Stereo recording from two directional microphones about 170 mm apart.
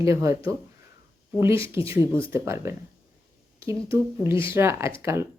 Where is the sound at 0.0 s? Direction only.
15° right (ahead or behind).